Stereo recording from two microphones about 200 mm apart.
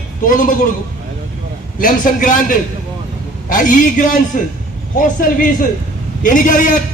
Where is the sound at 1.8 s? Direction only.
40° left (ahead or behind).